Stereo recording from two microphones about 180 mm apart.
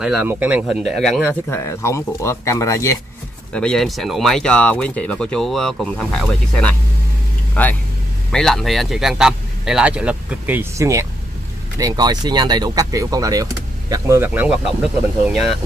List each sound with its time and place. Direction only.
0.0 s speech: 10° right (ahead or behind)
1.5 s speech: 15° left (ahead or behind)
3.5 s speech: 5° left (ahead or behind)